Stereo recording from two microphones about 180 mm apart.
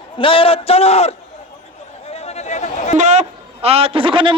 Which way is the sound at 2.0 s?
35° left (ahead or behind).